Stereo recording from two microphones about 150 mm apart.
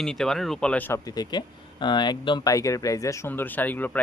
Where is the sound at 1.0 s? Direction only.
25° left (ahead or behind).